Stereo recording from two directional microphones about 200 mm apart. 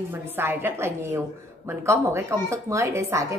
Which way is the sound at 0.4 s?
10° right (ahead or behind).